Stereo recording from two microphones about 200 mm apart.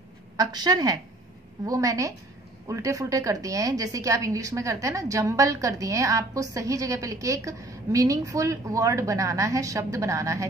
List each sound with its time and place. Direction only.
0.4 s a woman's voice: 20° right (ahead or behind)